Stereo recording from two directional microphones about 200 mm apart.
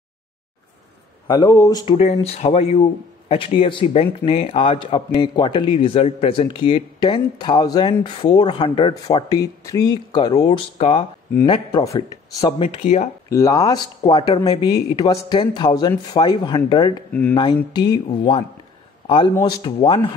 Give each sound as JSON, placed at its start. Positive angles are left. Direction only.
{"t": 1.2, "sound": "speech", "side_deg": 15}
{"t": 2.2, "sound": "speech", "side_deg": 30}
{"t": 13.3, "sound": "speech", "side_deg": 15}
{"t": 17.1, "sound": "speech", "side_deg": 10}
{"t": 17.7, "sound": "a man's voice", "side_deg": 20}